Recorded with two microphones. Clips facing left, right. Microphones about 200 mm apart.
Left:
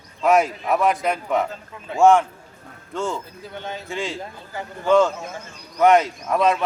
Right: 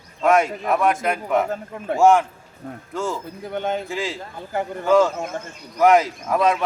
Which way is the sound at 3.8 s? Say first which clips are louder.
Right 1 dB; centre (ahead or behind).